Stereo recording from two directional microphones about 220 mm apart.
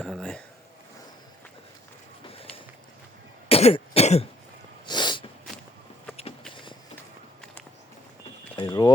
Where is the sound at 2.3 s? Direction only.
25° left (ahead or behind).